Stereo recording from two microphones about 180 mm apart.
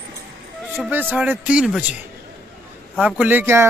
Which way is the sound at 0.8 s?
10° right (ahead or behind).